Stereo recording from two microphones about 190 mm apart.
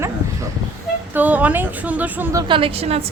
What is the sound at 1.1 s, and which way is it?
Speech, 10° right (ahead or behind).